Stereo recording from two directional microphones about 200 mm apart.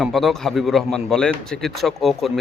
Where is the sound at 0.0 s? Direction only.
Centre (ahead or behind).